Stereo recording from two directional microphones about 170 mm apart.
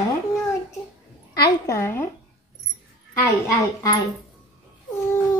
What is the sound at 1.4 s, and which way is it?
Speech, 15° left (ahead or behind).